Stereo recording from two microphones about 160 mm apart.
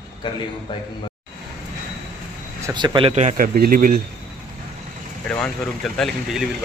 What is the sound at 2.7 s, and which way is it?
Speech, 25° right (ahead or behind).